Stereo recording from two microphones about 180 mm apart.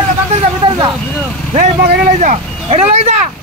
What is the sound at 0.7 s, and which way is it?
Vehicle, 20° right (ahead or behind).